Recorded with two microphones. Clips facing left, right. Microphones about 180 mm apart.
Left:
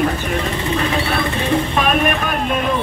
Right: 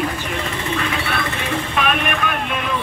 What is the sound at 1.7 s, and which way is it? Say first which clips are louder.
Vehicle: left 4 dB; 40° left (ahead or behind).